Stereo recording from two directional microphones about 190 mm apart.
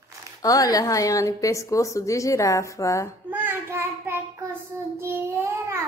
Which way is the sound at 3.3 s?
10° right (ahead or behind).